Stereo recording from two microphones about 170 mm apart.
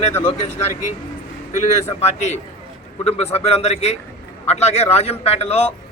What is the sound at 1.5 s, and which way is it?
A man's voice, 40° left (ahead or behind).